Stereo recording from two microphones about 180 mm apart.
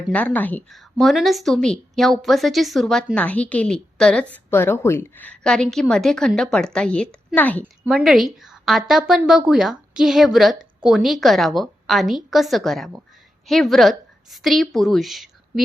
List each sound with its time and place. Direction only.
0.1 s a woman's voice: 10° left (ahead or behind)
7.6 s a woman's voice: 5° right (ahead or behind)